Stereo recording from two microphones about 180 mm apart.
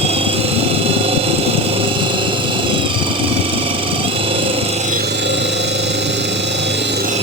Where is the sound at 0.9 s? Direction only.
30° right (ahead or behind).